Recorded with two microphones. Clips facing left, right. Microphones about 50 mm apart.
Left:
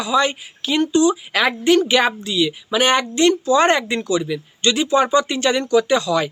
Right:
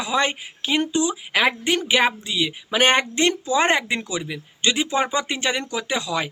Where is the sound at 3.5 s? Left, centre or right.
Centre.